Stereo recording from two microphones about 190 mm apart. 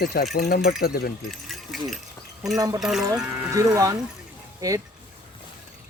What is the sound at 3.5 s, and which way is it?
Speech, 20° right (ahead or behind).